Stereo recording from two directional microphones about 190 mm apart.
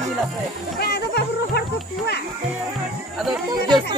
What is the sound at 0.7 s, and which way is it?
Speech, 60° left (ahead or behind).